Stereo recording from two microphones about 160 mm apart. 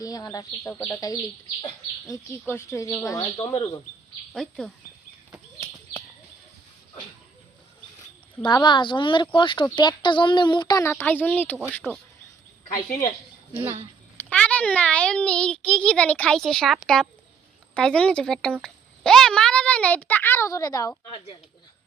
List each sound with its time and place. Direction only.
0.0 s speech: 20° left (ahead or behind)
0.7 s a child's voice: 5° left (ahead or behind)
0.9 s a child's voice: 20° left (ahead or behind)
4.4 s speech: centre (ahead or behind)
8.4 s speech: 30° left (ahead or behind); by 11.9 s 5° left (ahead or behind)
14.3 s a child's voice: 10° left (ahead or behind)